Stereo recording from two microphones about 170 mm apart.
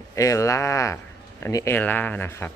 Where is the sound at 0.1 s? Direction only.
20° left (ahead or behind).